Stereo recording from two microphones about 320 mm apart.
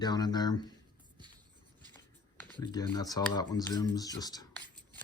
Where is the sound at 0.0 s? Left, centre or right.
Centre.